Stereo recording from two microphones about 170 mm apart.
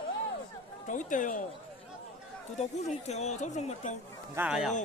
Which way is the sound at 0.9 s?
50° left (ahead or behind).